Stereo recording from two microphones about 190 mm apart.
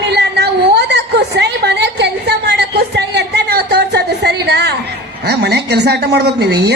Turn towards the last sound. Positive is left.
turn(degrees=-60)  # may be behind; listen again after turning